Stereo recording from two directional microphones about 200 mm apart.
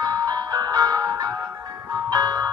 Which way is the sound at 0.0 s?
20° right (ahead or behind).